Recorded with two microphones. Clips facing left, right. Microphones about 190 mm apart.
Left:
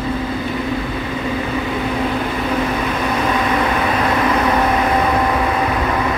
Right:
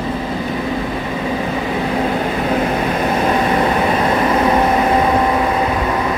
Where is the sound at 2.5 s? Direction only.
35° right (ahead or behind).